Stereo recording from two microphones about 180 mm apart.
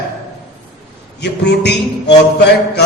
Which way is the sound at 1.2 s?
70° left (ahead or behind).